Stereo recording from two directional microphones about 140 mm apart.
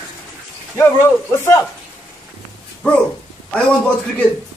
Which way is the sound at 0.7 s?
15° left (ahead or behind).